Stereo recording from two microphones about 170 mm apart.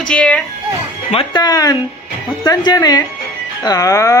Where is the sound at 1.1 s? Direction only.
30° left (ahead or behind).